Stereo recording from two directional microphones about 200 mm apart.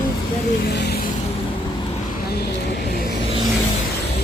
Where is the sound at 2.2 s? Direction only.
55° left (ahead or behind).